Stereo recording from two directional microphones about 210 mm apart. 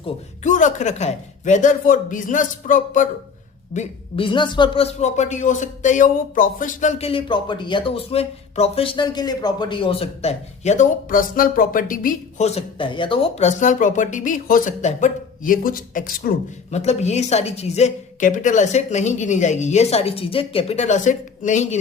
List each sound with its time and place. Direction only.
0.0 s speech: 35° left (ahead or behind)
3.8 s speech: 25° left (ahead or behind); by 16.3 s 40° left (ahead or behind)
16.7 s speech: 30° left (ahead or behind)